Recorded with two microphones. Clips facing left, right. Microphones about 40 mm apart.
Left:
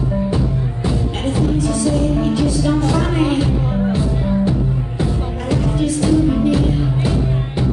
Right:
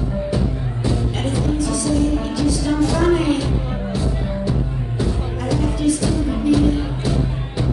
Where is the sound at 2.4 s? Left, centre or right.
Left.